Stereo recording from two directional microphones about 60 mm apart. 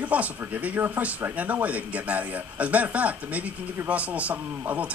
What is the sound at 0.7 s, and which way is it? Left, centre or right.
Speech, right.